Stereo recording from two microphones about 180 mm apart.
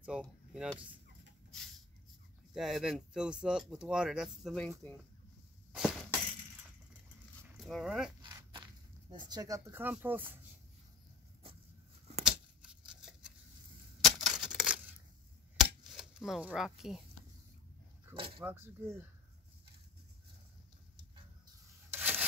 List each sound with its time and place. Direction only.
0.0 s speech: 5° right (ahead or behind)
2.5 s speech: centre (ahead or behind)
5.7 s a sound: 5° right (ahead or behind)
7.6 s speech: centre (ahead or behind)
8.2 s walk: 25° right (ahead or behind)
9.1 s speech: 20° right (ahead or behind)
12.8 s scissors: 5° right (ahead or behind)
14.0 s tearing: centre (ahead or behind)
15.5 s cap gun: centre (ahead or behind)
18.1 s speech: 30° right (ahead or behind)
18.4 s speech: 10° right (ahead or behind)
21.9 s rub: 10° right (ahead or behind)